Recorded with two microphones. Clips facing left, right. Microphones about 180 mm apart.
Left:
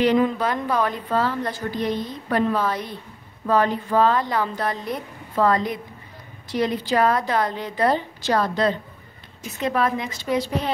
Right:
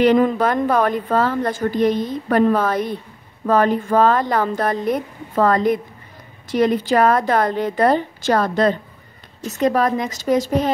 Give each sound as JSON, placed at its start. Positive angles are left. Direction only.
{"t": 0.0, "sound": "a woman's voice", "side_deg": -50}